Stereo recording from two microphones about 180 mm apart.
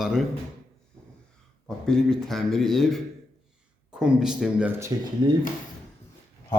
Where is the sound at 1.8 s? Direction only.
5° left (ahead or behind); by 4.9 s 15° right (ahead or behind).